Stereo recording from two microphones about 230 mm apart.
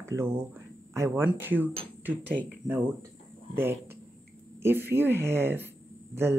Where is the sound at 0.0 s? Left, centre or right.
Centre.